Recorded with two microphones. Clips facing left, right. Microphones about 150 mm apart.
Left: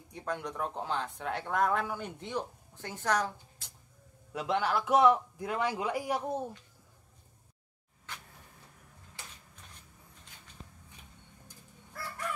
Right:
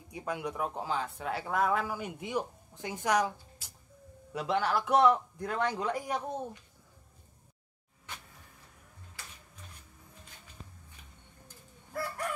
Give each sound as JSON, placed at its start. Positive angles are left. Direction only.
{"t": 0.1, "sound": "a man's voice", "side_deg": -10}